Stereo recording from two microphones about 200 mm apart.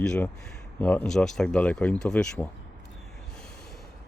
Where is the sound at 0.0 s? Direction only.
5° left (ahead or behind).